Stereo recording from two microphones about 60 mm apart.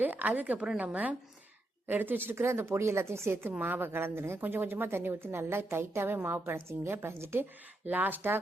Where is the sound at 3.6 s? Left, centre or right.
Right.